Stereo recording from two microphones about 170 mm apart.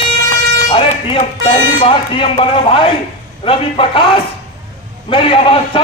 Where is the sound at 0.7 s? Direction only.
35° left (ahead or behind).